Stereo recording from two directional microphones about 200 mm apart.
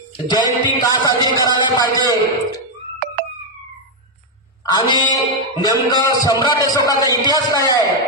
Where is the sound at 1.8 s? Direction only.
20° left (ahead or behind).